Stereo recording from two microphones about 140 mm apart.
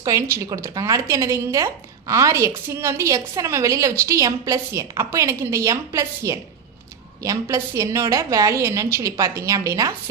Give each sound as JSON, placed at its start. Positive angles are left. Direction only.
{"t": 0.0, "sound": "speech", "side_deg": -20}